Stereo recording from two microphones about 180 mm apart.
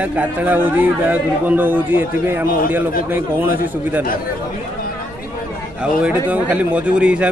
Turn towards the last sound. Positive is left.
turn(degrees=-5)  # may be behind; listen again after turning